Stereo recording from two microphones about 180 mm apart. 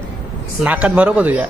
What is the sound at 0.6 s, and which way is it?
Speech, 5° right (ahead or behind).